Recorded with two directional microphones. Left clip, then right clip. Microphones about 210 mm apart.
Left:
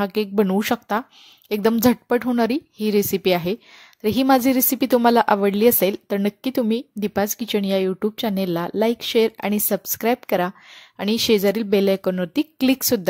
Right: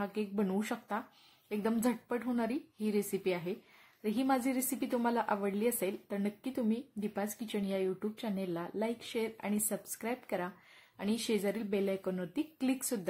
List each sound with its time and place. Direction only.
0.0 s a woman's voice: 45° left (ahead or behind)